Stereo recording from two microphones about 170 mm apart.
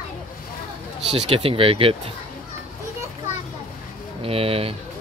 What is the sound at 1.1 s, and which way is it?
Speech, 30° right (ahead or behind).